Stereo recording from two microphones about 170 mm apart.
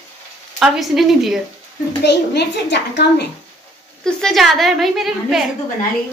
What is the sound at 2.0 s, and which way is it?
A child's voice, 90° left.